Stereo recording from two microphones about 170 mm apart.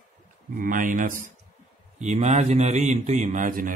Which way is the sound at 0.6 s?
50° right (ahead or behind).